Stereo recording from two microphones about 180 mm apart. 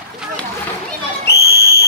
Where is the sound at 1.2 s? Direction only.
65° left (ahead or behind).